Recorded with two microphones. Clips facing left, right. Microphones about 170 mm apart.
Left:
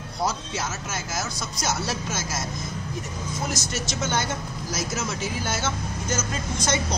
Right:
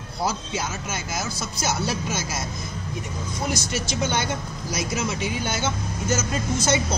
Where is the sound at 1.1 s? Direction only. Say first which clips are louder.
Right 1 dB; centre (ahead or behind).